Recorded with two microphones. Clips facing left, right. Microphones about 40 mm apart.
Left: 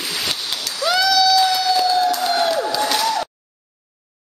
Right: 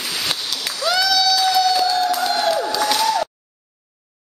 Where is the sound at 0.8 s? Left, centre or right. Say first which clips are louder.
Left 2 dB; centre.